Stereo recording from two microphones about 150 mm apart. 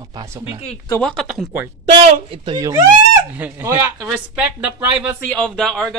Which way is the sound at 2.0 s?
40° right (ahead or behind).